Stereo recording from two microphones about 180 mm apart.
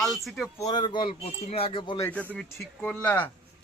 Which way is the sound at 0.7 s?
25° left (ahead or behind).